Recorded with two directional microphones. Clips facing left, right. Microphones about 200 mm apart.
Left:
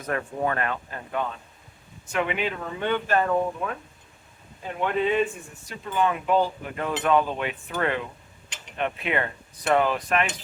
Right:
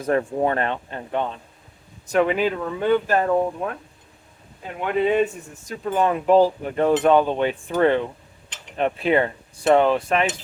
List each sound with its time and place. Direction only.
0.0 s speech: 30° right (ahead or behind)
5.0 s speech: 40° right (ahead or behind)